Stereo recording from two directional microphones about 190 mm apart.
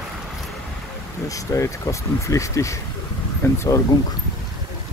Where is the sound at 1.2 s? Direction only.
15° left (ahead or behind).